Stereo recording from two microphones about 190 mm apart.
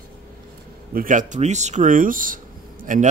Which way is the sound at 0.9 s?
45° right (ahead or behind).